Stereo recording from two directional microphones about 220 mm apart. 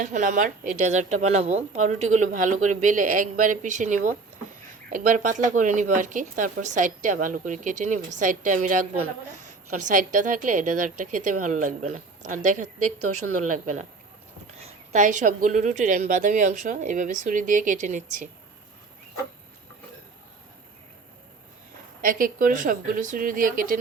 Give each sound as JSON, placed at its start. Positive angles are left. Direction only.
{"t": 0.0, "sound": "speech", "side_deg": -35}
{"t": 13.0, "sound": "a woman's voice", "side_deg": -85}
{"t": 13.4, "sound": "speech", "side_deg": -35}
{"t": 22.0, "sound": "speech", "side_deg": -40}